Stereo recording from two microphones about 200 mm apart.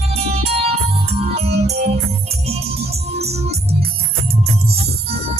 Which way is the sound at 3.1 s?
30° right (ahead or behind).